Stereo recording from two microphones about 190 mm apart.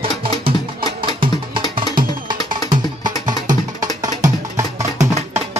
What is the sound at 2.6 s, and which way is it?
Music, 25° right (ahead or behind).